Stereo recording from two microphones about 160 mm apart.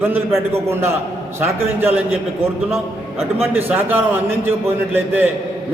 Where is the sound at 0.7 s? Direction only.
15° right (ahead or behind).